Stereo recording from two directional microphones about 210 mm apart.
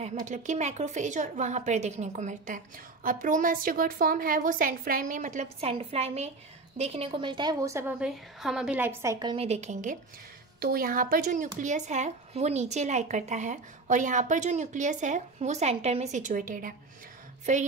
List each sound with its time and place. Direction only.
0.0 s a woman's voice: 35° right (ahead or behind); by 7.8 s 15° right (ahead or behind)
8.0 s a woman's voice: centre (ahead or behind); by 16.7 s 40° right (ahead or behind)